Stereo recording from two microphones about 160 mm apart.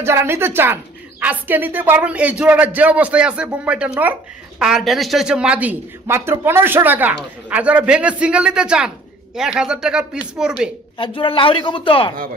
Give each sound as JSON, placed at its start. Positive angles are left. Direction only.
{"t": 0.0, "sound": "speech", "side_deg": -15}
{"t": 10.9, "sound": "speech", "side_deg": 30}